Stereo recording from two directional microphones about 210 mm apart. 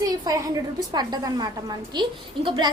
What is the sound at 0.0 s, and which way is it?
A woman's voice, 15° right (ahead or behind).